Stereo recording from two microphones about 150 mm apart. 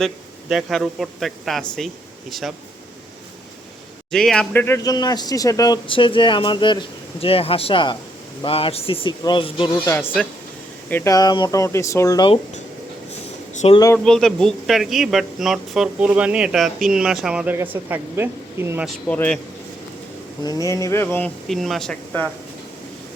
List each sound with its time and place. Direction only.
0.0 s speech: centre (ahead or behind)
4.1 s speech: 5° left (ahead or behind)
4.8 s speech: 25° left (ahead or behind)
9.7 s speech: 15° left (ahead or behind)
11.1 s speech: 25° left (ahead or behind)
13.5 s a sound: 50° left (ahead or behind)
13.9 s speech: 5° left (ahead or behind); by 18.9 s 15° right (ahead or behind)
19.0 s speech: 10° left (ahead or behind)
20.4 s speech: 25° left (ahead or behind)
21.4 s speech: centre (ahead or behind)